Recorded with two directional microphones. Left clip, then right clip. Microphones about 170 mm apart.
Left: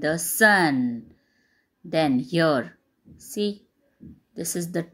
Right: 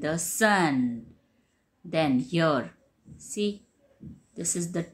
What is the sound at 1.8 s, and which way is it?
Speech, 30° left (ahead or behind).